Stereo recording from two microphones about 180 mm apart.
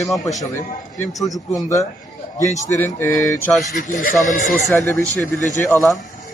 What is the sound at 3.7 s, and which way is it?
Speech, 50° left (ahead or behind).